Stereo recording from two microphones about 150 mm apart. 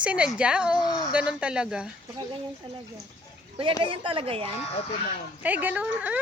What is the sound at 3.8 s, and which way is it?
Speech, 35° right (ahead or behind).